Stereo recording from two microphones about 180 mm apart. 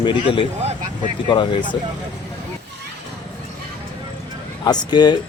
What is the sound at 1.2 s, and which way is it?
Speech, 25° left (ahead or behind).